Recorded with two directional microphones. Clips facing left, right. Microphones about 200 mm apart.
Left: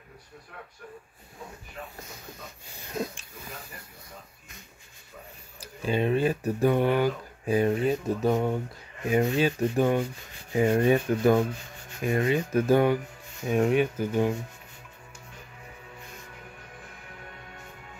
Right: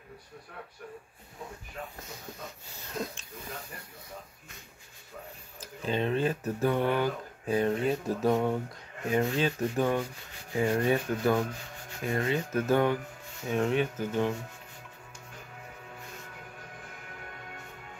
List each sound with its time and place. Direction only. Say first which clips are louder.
2.9 s speech: left 3 dB; 15° left (ahead or behind)
5.9 s speech: left 4 dB; 10° left (ahead or behind)
7.8 s speech: left 2 dB; centre (ahead or behind)
9.0 s speech: left 4 dB; 15° left (ahead or behind)
10.5 s rub: left 5 dB; 20° left (ahead or behind)
12.0 s speech: left 4 dB; 15° left (ahead or behind)